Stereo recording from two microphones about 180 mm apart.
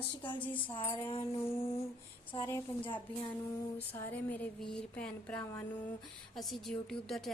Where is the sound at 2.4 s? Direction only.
15° left (ahead or behind).